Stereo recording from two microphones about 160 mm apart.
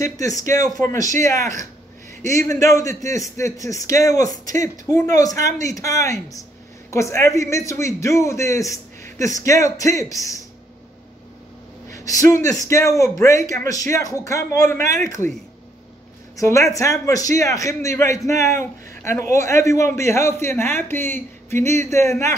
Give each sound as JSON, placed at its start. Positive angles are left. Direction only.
{"t": 0.0, "sound": "a man's voice", "side_deg": 20}
{"t": 11.9, "sound": "a man's voice", "side_deg": 20}
{"t": 16.3, "sound": "a man's voice", "side_deg": 20}